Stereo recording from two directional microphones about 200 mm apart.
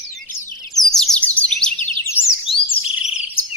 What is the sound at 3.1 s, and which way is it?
Bird vocalization, 30° left (ahead or behind).